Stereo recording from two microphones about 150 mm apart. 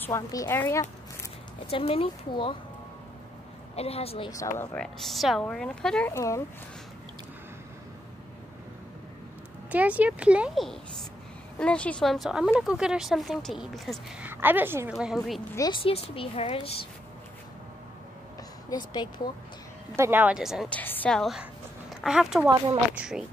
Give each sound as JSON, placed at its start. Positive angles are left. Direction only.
{"t": 0.0, "sound": "a woman's voice", "side_deg": 20}
{"t": 1.7, "sound": "a woman's voice", "side_deg": 40}
{"t": 3.7, "sound": "a woman's voice", "side_deg": 40}
{"t": 4.3, "sound": "speech", "side_deg": 20}
{"t": 4.7, "sound": "speech", "side_deg": 0}
{"t": 6.1, "sound": "speech", "side_deg": 20}
{"t": 9.7, "sound": "speech", "side_deg": -10}
{"t": 14.2, "sound": "speech", "side_deg": -15}
{"t": 15.0, "sound": "speech", "side_deg": 0}
{"t": 15.5, "sound": "speech", "side_deg": 25}
{"t": 15.8, "sound": "a woman's voice", "side_deg": 40}
{"t": 18.7, "sound": "speech", "side_deg": 30}
{"t": 20.0, "sound": "speech", "side_deg": -15}
{"t": 20.7, "sound": "a woman's voice", "side_deg": 10}